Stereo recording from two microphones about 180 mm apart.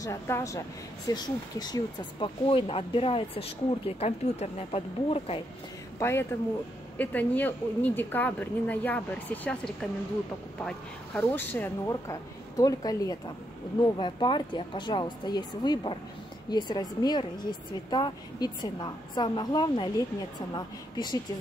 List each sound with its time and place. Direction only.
0.0 s speech: 15° left (ahead or behind); by 5.4 s 35° left (ahead or behind)
5.9 s a woman's voice: 15° left (ahead or behind)